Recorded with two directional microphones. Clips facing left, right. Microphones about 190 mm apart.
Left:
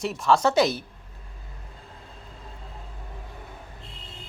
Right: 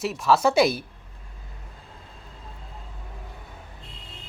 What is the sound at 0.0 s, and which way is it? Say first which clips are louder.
Speech: right 1 dB; 5° right (ahead or behind).